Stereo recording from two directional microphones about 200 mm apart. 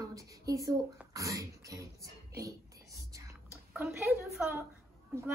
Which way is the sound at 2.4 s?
15° right (ahead or behind).